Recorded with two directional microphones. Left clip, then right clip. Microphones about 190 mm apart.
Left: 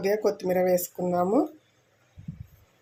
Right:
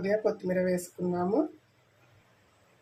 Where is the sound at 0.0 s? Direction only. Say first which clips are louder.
Left 3 dB; 45° left (ahead or behind).